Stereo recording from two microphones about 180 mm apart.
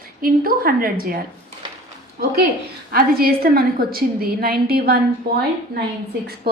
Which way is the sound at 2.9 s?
55° right (ahead or behind).